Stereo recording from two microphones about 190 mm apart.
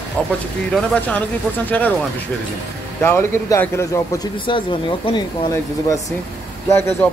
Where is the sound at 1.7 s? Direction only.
10° left (ahead or behind).